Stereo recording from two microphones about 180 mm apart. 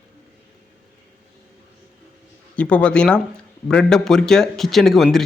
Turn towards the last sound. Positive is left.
turn(degrees=0)  # may be behind; listen again after turning